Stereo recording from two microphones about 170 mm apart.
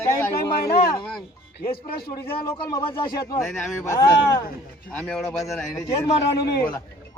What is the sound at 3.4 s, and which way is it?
Speech, centre (ahead or behind).